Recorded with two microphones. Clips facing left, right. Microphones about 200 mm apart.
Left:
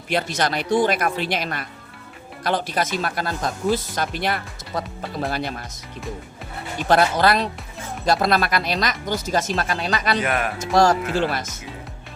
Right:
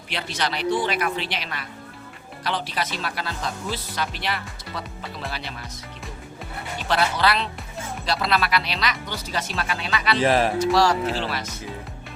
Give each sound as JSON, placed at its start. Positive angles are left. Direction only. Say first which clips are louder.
{"t": 0.1, "sound": "speech", "louder": "left 6 dB", "side_deg": 45}
{"t": 6.8, "sound": "speech", "louder": "left 5 dB", "side_deg": 45}
{"t": 10.2, "sound": "speech", "louder": "right 4 dB", "side_deg": -30}
{"t": 10.6, "sound": "speech", "louder": "left 2 dB", "side_deg": 45}